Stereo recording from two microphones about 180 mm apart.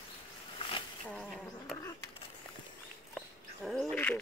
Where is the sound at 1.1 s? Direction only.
Centre (ahead or behind).